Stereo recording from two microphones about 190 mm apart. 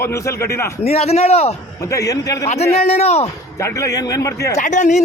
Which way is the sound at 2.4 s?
35° left (ahead or behind).